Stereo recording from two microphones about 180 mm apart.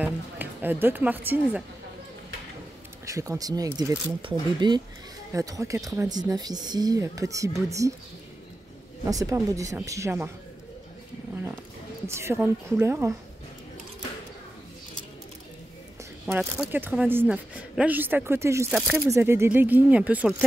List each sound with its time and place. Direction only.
0.0 s speech: 10° right (ahead or behind)
3.1 s speech: 15° right (ahead or behind)
9.0 s speech: 20° right (ahead or behind)
12.1 s speech: 15° right (ahead or behind)
16.3 s speech: 10° right (ahead or behind)